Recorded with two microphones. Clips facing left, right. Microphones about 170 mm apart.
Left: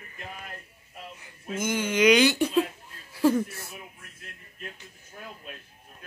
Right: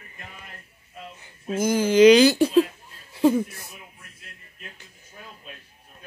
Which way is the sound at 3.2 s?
20° right (ahead or behind).